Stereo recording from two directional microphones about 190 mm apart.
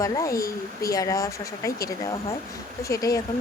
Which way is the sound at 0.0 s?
15° left (ahead or behind).